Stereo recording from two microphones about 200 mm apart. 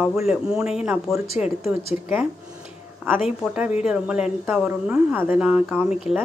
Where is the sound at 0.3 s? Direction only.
5° right (ahead or behind).